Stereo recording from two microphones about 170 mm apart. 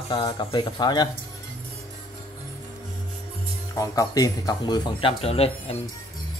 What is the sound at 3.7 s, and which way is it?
Speech, 20° left (ahead or behind).